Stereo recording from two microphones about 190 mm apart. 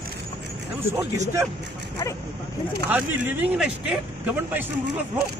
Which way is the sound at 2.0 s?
20° left (ahead or behind).